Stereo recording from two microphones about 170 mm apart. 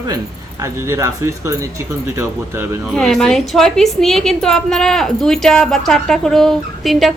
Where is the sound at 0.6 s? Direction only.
20° right (ahead or behind).